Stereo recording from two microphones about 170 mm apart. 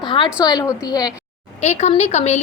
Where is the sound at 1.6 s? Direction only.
40° left (ahead or behind).